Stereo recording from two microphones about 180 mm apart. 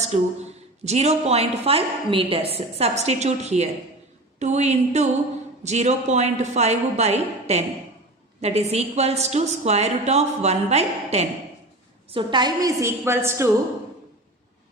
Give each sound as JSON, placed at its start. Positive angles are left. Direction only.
{"t": 0.0, "sound": "a woman's voice", "side_deg": -35}
{"t": 12.1, "sound": "a woman's voice", "side_deg": -25}